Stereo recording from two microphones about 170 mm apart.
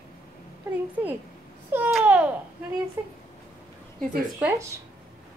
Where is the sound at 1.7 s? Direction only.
10° right (ahead or behind).